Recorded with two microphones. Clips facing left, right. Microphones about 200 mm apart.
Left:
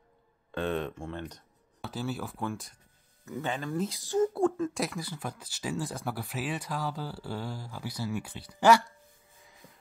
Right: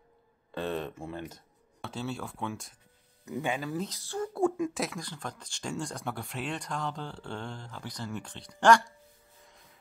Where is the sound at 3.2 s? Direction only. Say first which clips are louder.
Right 1 dB; 15° right (ahead or behind).